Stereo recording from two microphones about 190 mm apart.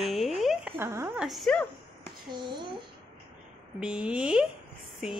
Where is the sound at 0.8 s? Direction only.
10° right (ahead or behind).